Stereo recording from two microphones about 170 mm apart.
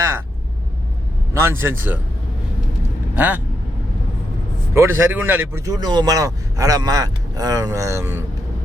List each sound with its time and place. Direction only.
1.3 s speech: 15° right (ahead or behind)
3.2 s speech: 10° right (ahead or behind)
4.7 s speech: 15° right (ahead or behind)